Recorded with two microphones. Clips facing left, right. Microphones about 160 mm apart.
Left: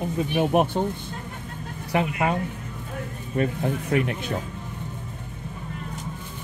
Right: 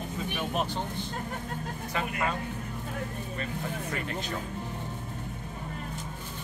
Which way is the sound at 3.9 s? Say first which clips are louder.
Left 9 dB; 70° left (ahead or behind).